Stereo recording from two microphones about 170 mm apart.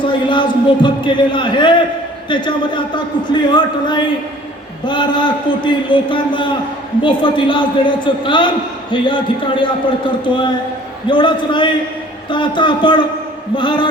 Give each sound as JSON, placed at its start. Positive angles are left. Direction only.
{"t": 0.0, "sound": "a man's voice", "side_deg": 30}